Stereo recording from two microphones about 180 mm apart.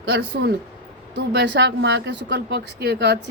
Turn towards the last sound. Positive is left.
turn(degrees=-65)  # may be behind; listen again after turning